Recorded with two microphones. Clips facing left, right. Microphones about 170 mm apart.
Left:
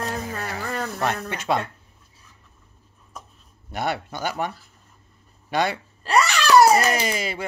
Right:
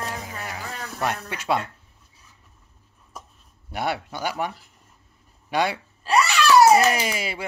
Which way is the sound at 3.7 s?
10° right (ahead or behind).